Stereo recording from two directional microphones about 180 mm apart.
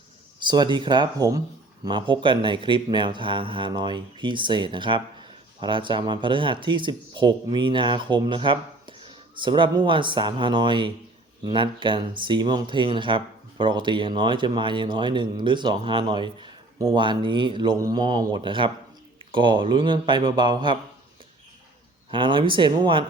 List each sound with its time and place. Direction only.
0.3 s speech: 25° right (ahead or behind)
22.1 s speech: 25° right (ahead or behind)